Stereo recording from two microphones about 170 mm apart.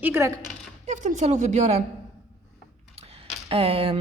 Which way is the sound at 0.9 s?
45° right (ahead or behind).